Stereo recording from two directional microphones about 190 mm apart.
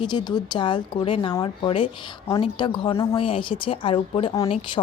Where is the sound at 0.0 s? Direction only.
25° left (ahead or behind).